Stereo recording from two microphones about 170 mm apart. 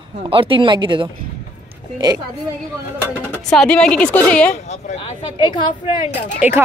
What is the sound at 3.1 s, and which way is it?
Speech, 5° left (ahead or behind).